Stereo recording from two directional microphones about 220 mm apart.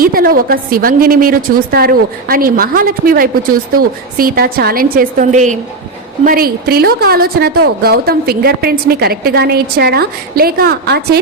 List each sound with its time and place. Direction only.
0.0 s a woman's voice: 40° right (ahead or behind)